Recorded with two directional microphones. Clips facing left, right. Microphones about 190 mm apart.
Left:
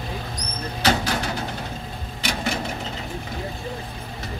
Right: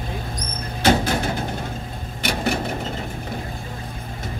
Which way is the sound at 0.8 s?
50° right (ahead or behind).